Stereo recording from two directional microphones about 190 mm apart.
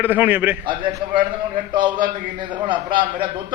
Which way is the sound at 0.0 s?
10° right (ahead or behind).